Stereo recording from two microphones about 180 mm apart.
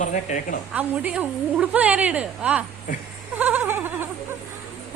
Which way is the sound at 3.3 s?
10° right (ahead or behind).